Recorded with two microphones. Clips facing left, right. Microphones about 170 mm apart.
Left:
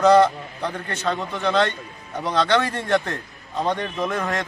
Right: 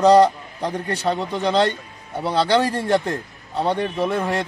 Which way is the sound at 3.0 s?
10° right (ahead or behind).